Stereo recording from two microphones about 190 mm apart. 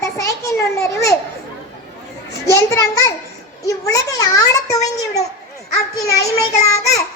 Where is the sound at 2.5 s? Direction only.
15° left (ahead or behind).